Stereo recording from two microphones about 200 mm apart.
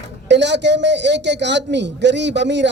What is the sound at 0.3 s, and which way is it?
A man's voice, 60° right (ahead or behind).